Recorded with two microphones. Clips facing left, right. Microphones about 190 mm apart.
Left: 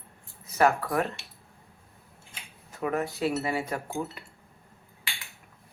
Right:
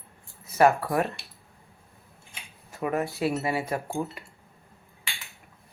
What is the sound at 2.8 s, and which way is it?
Speech, 10° right (ahead or behind).